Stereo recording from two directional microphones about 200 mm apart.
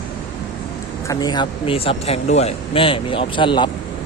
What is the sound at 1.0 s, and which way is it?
Speech, 20° left (ahead or behind).